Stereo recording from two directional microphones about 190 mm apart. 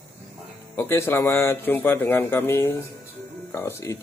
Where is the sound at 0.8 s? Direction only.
10° left (ahead or behind).